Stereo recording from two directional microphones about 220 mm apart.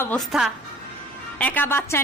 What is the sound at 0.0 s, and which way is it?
A woman's voice, 5° left (ahead or behind).